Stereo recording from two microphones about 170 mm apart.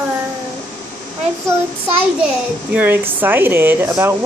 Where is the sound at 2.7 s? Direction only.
10° right (ahead or behind).